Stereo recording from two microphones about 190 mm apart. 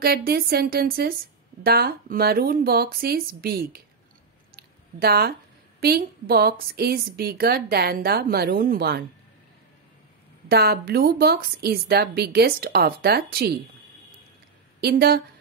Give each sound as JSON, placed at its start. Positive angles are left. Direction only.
{"t": 0.0, "sound": "a woman's voice", "side_deg": -55}
{"t": 4.6, "sound": "a sound", "side_deg": -55}
{"t": 5.8, "sound": "a woman's voice", "side_deg": -55}
{"t": 10.5, "sound": "a woman's voice", "side_deg": -55}
{"t": 14.8, "sound": "a woman's voice", "side_deg": -55}